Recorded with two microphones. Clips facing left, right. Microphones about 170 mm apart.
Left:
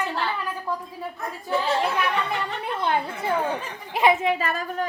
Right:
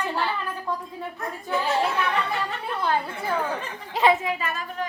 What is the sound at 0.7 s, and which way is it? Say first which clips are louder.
Speech: even; 5° left (ahead or behind).